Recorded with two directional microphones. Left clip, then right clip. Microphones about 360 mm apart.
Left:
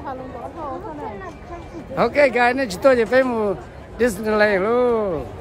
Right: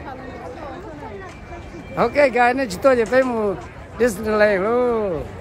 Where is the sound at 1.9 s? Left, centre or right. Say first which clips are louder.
Even; centre.